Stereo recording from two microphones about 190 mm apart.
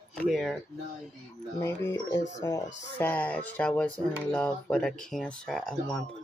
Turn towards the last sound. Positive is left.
turn(degrees=0)  # may be behind; listen again after turning